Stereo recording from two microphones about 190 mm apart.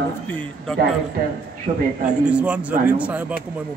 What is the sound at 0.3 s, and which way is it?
Speech, 5° left (ahead or behind).